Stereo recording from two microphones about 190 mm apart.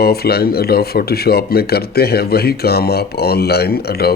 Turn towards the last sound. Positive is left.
turn(degrees=55)  # may be behind; listen again after turning